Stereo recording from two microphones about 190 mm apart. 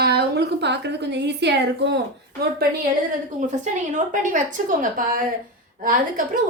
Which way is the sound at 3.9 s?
40° right (ahead or behind).